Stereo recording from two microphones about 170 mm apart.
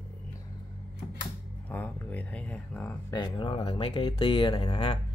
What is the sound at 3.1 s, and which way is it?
Speech, 25° left (ahead or behind).